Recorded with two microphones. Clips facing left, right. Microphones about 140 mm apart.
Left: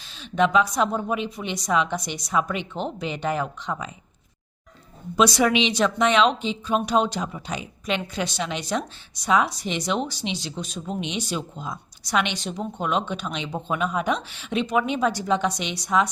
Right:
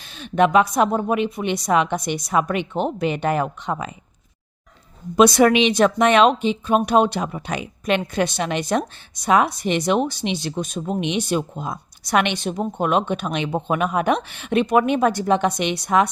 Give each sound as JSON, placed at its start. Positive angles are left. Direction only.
{"t": 0.0, "sound": "speech", "side_deg": -55}
{"t": 5.1, "sound": "speech", "side_deg": -55}